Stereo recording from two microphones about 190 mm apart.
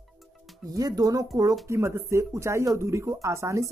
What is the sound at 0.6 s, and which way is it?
Speech, 20° right (ahead or behind).